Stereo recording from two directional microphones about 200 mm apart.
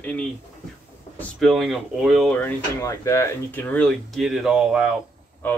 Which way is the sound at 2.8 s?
15° left (ahead or behind).